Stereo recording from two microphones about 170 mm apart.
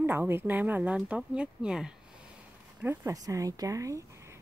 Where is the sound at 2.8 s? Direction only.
15° right (ahead or behind).